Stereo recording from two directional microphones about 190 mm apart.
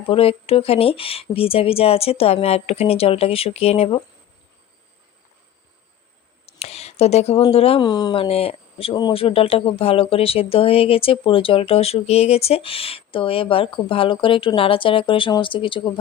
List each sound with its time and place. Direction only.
0.0 s speech: 30° left (ahead or behind)
6.4 s a sound: 35° left (ahead or behind)
7.5 s speech: 30° left (ahead or behind)